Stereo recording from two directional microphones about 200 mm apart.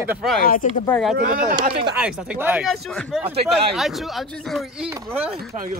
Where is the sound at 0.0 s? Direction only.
5° right (ahead or behind).